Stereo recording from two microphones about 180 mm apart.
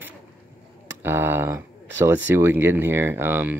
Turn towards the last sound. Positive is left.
turn(degrees=-10)  # may be behind; listen again after turning